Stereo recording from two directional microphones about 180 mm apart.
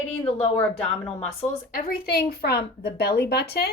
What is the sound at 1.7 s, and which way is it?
A woman's voice, 60° left (ahead or behind).